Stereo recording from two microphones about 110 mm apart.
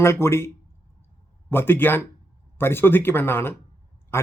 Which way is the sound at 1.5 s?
20° left (ahead or behind).